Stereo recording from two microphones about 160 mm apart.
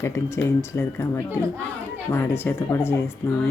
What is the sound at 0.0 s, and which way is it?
Speech, 15° left (ahead or behind).